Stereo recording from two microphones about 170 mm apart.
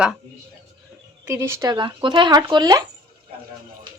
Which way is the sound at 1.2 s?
15° right (ahead or behind).